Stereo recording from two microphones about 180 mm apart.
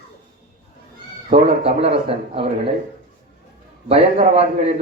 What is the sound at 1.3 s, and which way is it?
A man's voice, 40° right (ahead or behind).